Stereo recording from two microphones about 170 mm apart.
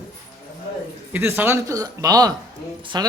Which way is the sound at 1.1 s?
10° right (ahead or behind).